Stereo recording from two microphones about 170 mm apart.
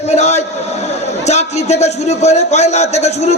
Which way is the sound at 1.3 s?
40° left (ahead or behind).